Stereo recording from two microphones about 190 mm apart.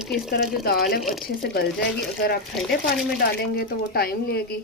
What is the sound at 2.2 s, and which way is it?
A woman's voice, 55° left (ahead or behind).